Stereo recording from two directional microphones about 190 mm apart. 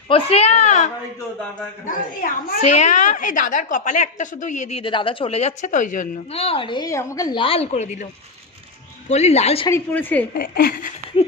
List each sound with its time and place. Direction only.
0.1 s a woman's voice: 30° left (ahead or behind)
1.9 s a child's voice: 45° left (ahead or behind)
9.0 s a woman's voice: 35° left (ahead or behind)
9.6 s a woman's voice: 10° left (ahead or behind)
10.3 s a child's voice: 55° left (ahead or behind)